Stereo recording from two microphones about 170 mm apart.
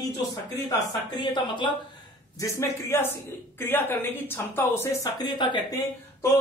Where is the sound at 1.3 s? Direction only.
25° left (ahead or behind).